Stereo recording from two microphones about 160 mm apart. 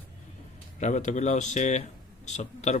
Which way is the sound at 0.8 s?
45° left (ahead or behind).